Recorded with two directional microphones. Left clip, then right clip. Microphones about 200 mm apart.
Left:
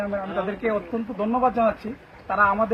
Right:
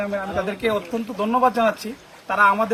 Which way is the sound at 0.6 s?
15° right (ahead or behind).